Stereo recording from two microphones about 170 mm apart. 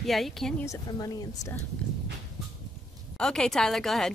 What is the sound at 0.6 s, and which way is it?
Speech, 20° left (ahead or behind).